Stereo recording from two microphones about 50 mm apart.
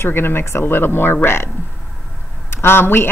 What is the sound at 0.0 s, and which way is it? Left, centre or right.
A woman's voice, left.